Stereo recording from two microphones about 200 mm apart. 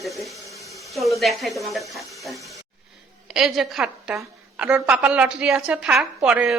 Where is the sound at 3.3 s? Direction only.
Centre (ahead or behind).